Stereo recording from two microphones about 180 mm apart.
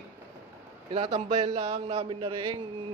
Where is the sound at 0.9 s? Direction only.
35° right (ahead or behind).